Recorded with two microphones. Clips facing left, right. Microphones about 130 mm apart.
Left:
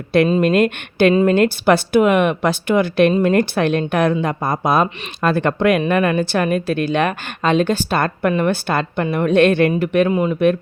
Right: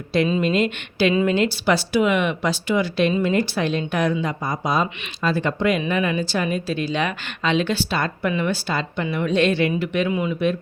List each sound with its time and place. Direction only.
0.1 s a woman's voice: 50° left (ahead or behind)